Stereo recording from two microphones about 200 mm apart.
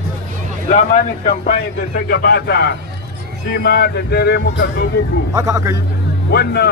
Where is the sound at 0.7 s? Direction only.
45° left (ahead or behind).